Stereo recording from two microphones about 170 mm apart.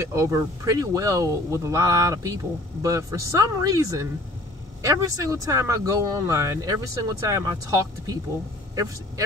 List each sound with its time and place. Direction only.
0.0 s speech: 20° right (ahead or behind)